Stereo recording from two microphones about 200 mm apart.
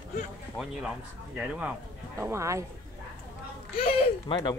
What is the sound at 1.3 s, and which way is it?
Speech, 5° right (ahead or behind).